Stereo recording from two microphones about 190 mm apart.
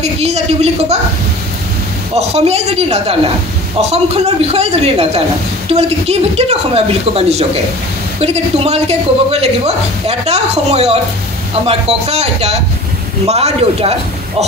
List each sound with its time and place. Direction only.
0.0 s a man's voice: 35° right (ahead or behind)
2.1 s a man's voice: 35° right (ahead or behind)